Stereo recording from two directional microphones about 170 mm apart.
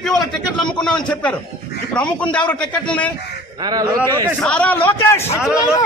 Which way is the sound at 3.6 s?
25° right (ahead or behind).